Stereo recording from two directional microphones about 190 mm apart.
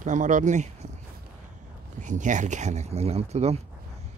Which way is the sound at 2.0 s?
40° right (ahead or behind).